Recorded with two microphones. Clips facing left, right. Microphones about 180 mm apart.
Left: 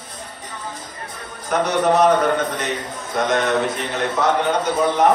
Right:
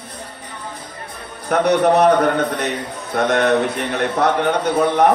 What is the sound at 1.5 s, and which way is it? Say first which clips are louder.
Speech: right 3 dB; 60° right (ahead or behind).